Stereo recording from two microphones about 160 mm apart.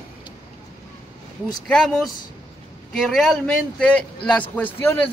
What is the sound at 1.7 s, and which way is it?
A man's voice, 5° left (ahead or behind).